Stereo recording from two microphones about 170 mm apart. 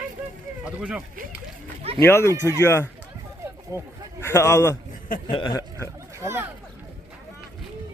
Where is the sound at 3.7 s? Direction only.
20° right (ahead or behind).